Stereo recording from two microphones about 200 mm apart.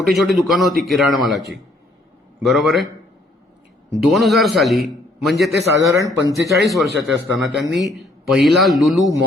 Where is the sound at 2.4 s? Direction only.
Centre (ahead or behind).